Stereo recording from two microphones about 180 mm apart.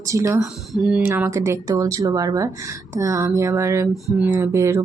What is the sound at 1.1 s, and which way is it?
Speech, 15° right (ahead or behind).